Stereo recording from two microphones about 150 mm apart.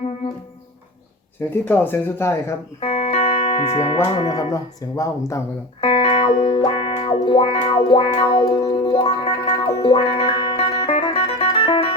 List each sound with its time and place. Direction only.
1.6 s speech: 15° left (ahead or behind)
2.8 s music: 40° left (ahead or behind)
4.0 s speech: 35° left (ahead or behind)
5.8 s music: 35° left (ahead or behind)